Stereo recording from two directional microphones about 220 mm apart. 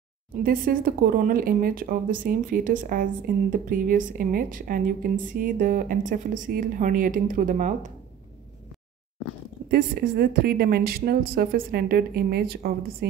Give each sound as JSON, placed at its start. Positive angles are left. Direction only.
{"t": 0.4, "sound": "speech", "side_deg": -40}
{"t": 9.7, "sound": "a woman's voice", "side_deg": -45}